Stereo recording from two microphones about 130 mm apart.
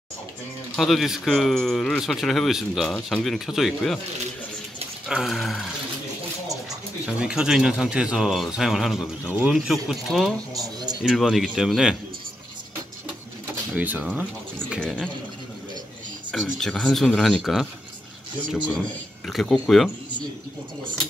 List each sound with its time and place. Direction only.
0.7 s speech: centre (ahead or behind)
5.0 s speech: 5° right (ahead or behind)
7.1 s speech: 5° right (ahead or behind)
9.3 s speech: 15° right (ahead or behind)
9.7 s speech: centre (ahead or behind)
10.5 s speech: 30° right (ahead or behind)
11.0 s speech: centre (ahead or behind)
13.7 s speech: 10° right (ahead or behind)
14.8 s speech: 5° left (ahead or behind)
16.3 s speech: 5° left (ahead or behind)
19.2 s speech: centre (ahead or behind)